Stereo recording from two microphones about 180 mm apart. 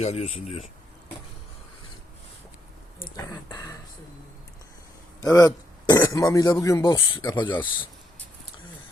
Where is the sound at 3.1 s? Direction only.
15° left (ahead or behind).